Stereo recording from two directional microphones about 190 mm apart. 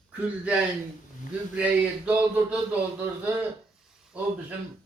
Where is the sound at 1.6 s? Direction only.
10° right (ahead or behind).